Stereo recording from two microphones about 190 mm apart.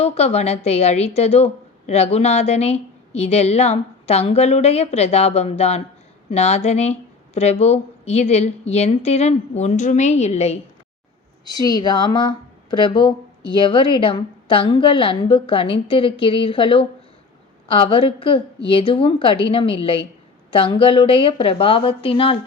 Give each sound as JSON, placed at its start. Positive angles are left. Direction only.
{"t": 0.0, "sound": "a woman's voice", "side_deg": 35}
{"t": 11.4, "sound": "a woman's voice", "side_deg": 20}